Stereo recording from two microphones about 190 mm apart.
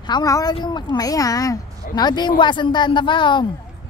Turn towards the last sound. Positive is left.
turn(degrees=25)  # may be behind; listen again after turning